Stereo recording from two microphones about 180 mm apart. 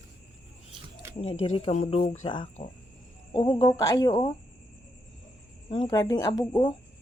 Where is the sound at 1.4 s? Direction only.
30° left (ahead or behind).